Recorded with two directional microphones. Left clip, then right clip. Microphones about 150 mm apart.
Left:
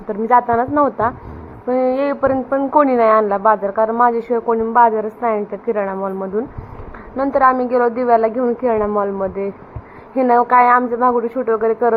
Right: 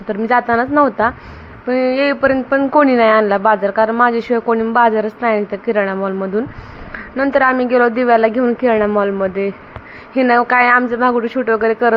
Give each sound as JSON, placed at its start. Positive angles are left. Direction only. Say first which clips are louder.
{"t": 0.1, "sound": "a woman's voice", "louder": "even", "side_deg": -30}
{"t": 1.6, "sound": "a woman's voice", "louder": "right 2 dB", "side_deg": -35}